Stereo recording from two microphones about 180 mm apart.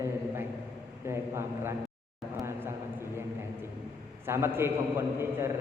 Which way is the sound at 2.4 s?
15° right (ahead or behind).